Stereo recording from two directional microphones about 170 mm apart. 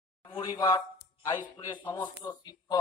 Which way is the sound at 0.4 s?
25° left (ahead or behind).